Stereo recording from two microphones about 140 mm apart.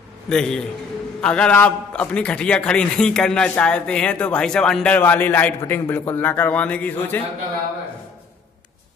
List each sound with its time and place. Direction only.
0.3 s a man's voice: 5° left (ahead or behind)